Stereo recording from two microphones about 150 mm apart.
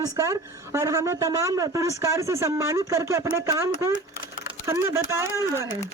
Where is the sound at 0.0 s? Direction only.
20° right (ahead or behind).